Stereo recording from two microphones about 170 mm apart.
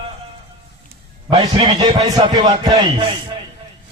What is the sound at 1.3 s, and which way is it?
A man's voice, 30° right (ahead or behind).